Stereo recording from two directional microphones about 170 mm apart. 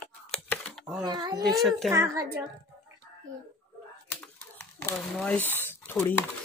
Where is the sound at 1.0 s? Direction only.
25° right (ahead or behind).